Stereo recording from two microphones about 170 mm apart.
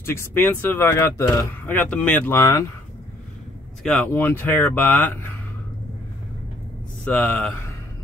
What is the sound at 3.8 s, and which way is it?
Speech, 5° left (ahead or behind).